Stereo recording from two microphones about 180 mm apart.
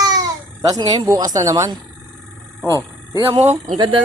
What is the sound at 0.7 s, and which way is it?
Speech, 20° right (ahead or behind).